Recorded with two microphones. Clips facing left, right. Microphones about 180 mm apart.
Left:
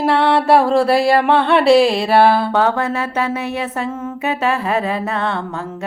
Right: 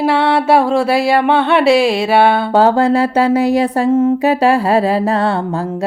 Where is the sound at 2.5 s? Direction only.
35° right (ahead or behind).